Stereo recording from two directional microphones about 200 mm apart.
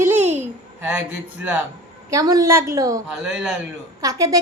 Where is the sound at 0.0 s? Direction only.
10° right (ahead or behind).